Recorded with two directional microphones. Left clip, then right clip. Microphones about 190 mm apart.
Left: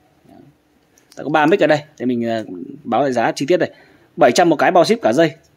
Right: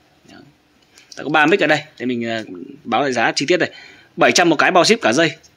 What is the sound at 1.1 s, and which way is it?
Speech, 20° left (ahead or behind).